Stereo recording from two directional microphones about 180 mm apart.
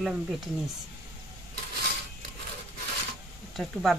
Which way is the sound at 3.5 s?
Centre (ahead or behind).